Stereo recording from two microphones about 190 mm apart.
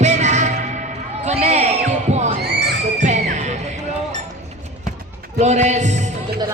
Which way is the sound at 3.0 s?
40° right (ahead or behind).